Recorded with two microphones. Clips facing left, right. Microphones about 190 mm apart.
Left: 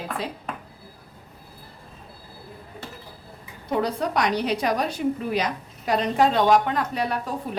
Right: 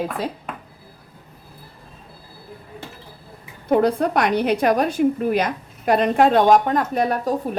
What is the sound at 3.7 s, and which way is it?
A woman's voice, 55° right (ahead or behind).